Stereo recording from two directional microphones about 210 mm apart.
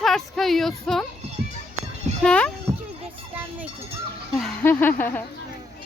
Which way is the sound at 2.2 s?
5° left (ahead or behind).